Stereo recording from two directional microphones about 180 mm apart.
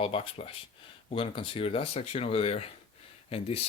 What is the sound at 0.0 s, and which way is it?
Speech, 30° left (ahead or behind).